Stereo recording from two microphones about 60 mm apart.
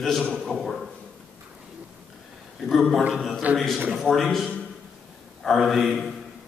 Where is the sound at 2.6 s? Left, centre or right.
Centre.